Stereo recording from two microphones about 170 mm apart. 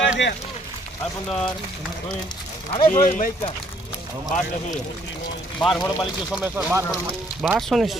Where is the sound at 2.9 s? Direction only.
50° left (ahead or behind).